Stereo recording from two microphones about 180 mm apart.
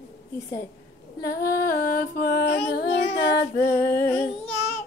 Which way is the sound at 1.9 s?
50° left (ahead or behind).